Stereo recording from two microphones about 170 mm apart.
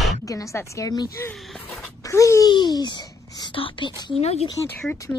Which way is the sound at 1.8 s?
20° left (ahead or behind).